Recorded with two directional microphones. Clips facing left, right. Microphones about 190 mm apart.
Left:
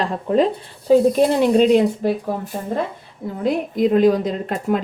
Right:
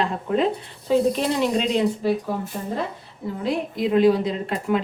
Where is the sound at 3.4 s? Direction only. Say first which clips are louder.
Left 6 dB; 45° left (ahead or behind).